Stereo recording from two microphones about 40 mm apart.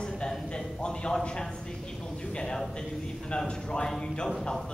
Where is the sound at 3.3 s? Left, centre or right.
Centre.